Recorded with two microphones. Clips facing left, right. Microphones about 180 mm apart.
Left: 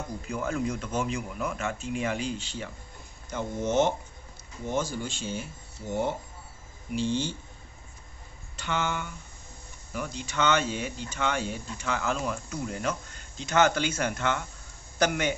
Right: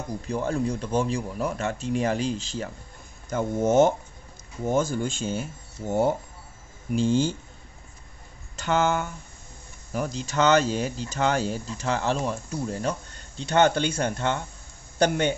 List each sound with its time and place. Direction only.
0.3 s speech: 30° right (ahead or behind)
8.5 s speech: 40° right (ahead or behind)